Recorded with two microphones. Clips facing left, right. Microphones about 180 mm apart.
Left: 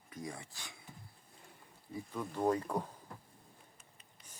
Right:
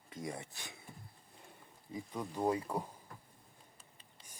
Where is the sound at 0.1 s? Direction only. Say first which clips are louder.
Right 2 dB; 20° right (ahead or behind).